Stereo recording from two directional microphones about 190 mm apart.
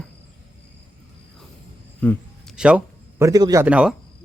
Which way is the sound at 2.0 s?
10° left (ahead or behind).